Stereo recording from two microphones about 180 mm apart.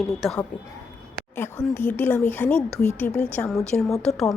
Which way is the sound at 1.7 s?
10° left (ahead or behind).